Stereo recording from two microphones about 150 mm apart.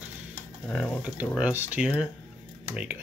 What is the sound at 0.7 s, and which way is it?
Speech, 5° left (ahead or behind).